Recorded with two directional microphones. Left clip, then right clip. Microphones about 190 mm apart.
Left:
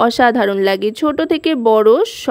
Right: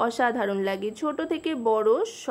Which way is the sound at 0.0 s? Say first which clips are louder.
Left 12 dB; 45° left (ahead or behind).